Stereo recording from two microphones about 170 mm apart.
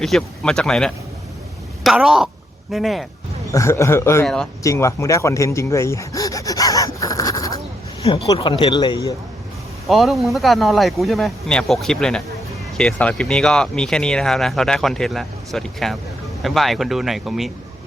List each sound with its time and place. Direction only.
0.0 s speech: 5° left (ahead or behind)
3.5 s a man's voice: 15° left (ahead or behind)
4.6 s a sound: 20° left (ahead or behind)
8.0 s speech: 35° left (ahead or behind)
9.9 s speech: centre (ahead or behind)